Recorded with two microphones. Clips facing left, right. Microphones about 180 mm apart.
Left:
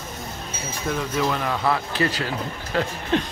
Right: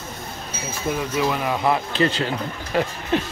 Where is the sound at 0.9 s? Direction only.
10° right (ahead or behind); by 2.3 s 25° right (ahead or behind).